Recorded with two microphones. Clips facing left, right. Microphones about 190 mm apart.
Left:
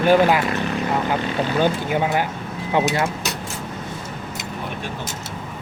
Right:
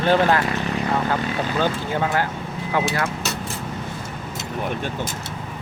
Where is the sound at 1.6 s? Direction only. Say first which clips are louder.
Left 3 dB; 15° left (ahead or behind).